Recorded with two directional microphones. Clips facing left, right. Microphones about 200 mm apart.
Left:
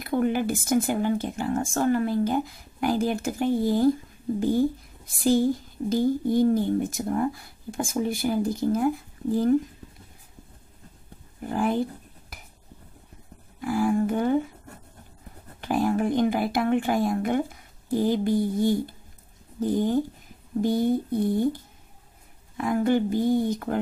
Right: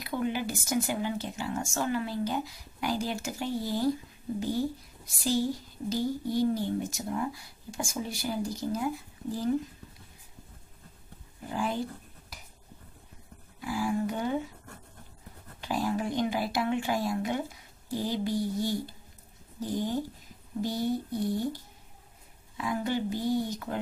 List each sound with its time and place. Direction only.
0.0 s speech: 50° left (ahead or behind)
11.4 s speech: 55° left (ahead or behind)
13.6 s speech: 50° left (ahead or behind)
15.6 s speech: 55° left (ahead or behind)
22.6 s speech: 50° left (ahead or behind)